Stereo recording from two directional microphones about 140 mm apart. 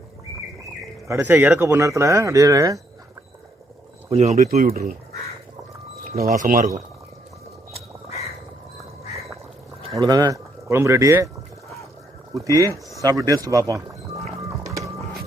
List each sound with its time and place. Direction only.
1.0 s speech: 20° right (ahead or behind)
4.1 s speech: 50° right (ahead or behind)
4.4 s speech: 90° right
6.1 s speech: 85° right
10.0 s speech: 25° right (ahead or behind)
12.3 s speech: 25° right (ahead or behind)
14.6 s music: 25° right (ahead or behind)